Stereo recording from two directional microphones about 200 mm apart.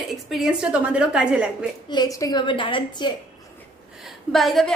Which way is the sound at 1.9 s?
20° left (ahead or behind).